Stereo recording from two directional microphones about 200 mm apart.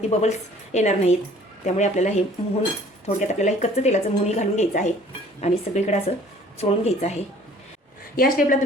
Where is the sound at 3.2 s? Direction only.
35° left (ahead or behind).